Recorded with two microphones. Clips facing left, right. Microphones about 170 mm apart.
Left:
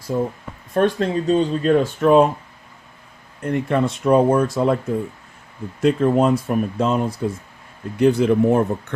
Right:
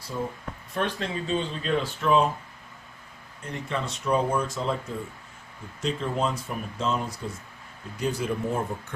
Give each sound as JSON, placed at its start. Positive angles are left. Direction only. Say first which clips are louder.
{"t": 0.1, "sound": "speech", "louder": "left 9 dB", "side_deg": 45}
{"t": 3.4, "sound": "speech", "louder": "left 12 dB", "side_deg": 55}
{"t": 5.8, "sound": "speech", "louder": "left 11 dB", "side_deg": 55}